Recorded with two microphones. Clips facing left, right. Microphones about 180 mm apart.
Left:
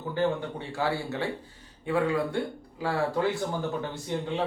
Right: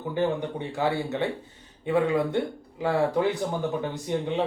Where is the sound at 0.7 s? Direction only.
20° right (ahead or behind).